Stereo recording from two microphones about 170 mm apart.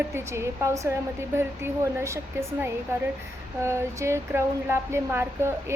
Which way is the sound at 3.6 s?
15° right (ahead or behind).